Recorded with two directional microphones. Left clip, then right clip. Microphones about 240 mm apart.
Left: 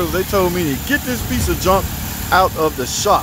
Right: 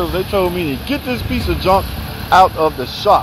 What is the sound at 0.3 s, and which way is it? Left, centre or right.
Speech, centre.